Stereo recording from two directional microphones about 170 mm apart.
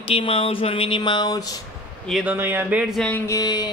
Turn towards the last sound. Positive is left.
turn(degrees=25)  # may be behind; listen again after turning